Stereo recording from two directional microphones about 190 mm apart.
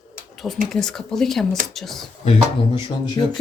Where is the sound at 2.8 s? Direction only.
25° left (ahead or behind).